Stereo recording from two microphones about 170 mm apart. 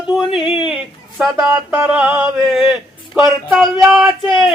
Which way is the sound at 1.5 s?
15° right (ahead or behind).